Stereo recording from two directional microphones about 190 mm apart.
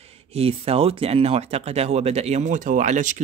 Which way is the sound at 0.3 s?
30° right (ahead or behind).